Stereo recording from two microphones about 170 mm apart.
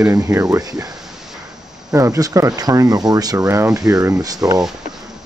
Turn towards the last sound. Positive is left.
turn(degrees=-20)  # may be behind; listen again after turning